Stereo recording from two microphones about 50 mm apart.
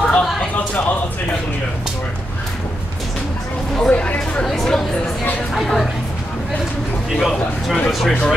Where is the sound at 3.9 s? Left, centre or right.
Left.